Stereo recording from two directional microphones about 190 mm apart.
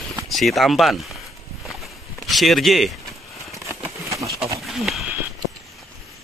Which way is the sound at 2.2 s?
Centre (ahead or behind).